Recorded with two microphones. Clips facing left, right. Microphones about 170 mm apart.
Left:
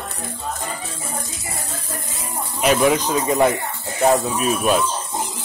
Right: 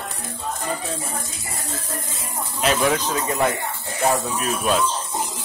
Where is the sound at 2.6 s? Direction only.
15° left (ahead or behind).